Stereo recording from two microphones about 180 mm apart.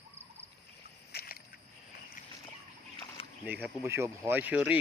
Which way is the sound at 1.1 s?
60° left (ahead or behind).